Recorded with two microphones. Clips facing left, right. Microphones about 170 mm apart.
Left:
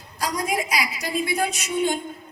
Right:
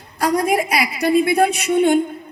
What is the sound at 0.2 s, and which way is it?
Speech, 60° right (ahead or behind).